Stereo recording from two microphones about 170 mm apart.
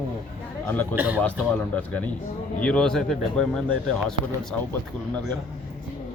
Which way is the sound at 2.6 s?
5° left (ahead or behind).